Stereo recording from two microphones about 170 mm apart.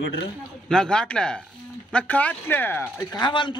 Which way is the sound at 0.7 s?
5° left (ahead or behind).